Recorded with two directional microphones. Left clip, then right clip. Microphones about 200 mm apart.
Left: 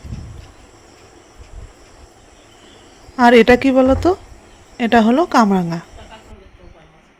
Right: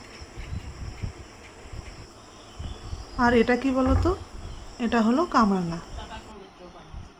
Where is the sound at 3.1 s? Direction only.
30° left (ahead or behind).